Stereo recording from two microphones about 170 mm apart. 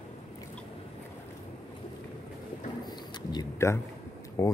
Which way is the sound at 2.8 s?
25° left (ahead or behind).